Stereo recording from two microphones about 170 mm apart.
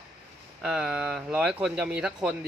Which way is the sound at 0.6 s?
5° right (ahead or behind).